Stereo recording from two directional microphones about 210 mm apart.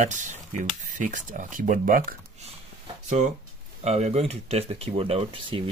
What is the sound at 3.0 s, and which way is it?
Speech, 35° right (ahead or behind).